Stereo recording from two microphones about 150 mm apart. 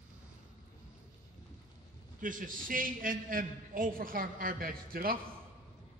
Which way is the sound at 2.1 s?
60° right (ahead or behind).